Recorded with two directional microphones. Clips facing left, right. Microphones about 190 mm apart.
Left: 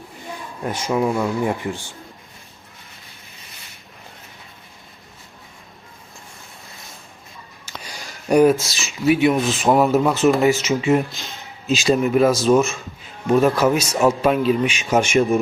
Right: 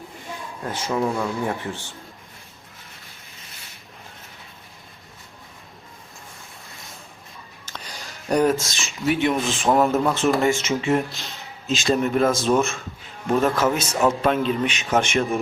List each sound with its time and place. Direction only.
0.6 s speech: 15° left (ahead or behind)
7.6 s a sound: 10° left (ahead or behind)
8.6 s speech: 5° left (ahead or behind)
13.4 s speech: 10° left (ahead or behind)